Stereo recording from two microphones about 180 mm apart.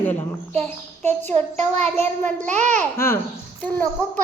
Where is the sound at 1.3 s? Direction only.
40° right (ahead or behind).